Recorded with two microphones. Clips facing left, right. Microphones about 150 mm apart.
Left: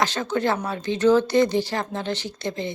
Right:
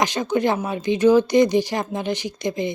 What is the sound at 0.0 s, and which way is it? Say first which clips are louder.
Speech: right 3 dB; 15° right (ahead or behind).